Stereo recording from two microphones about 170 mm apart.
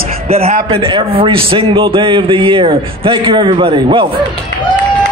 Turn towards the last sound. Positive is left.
turn(degrees=-30)  # may be behind; listen again after turning